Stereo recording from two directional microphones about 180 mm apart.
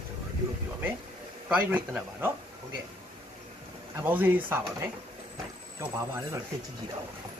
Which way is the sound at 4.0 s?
10° right (ahead or behind).